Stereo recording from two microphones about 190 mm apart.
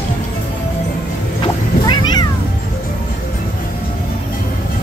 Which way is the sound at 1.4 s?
25° left (ahead or behind).